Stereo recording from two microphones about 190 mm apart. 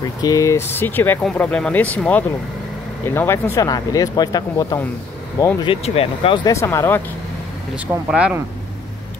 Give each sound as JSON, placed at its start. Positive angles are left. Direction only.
{"t": 0.2, "sound": "speech", "side_deg": 15}
{"t": 7.7, "sound": "speech", "side_deg": -5}